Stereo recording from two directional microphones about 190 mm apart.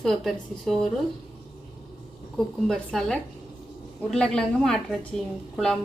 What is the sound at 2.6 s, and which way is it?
A woman's voice, centre (ahead or behind).